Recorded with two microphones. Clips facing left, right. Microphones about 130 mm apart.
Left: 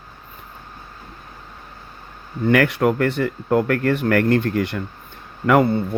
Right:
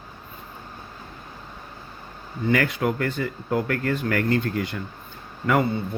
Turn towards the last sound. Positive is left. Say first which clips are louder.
# left 6 dB
turn(degrees=60)  # may be behind; listen again after turning